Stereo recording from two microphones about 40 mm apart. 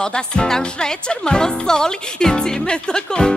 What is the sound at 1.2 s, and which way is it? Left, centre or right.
Speech, centre.